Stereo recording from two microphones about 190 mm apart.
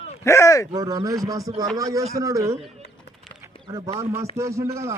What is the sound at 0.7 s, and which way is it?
Speech, 20° right (ahead or behind).